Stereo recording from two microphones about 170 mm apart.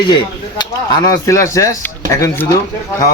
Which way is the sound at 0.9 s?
20° left (ahead or behind).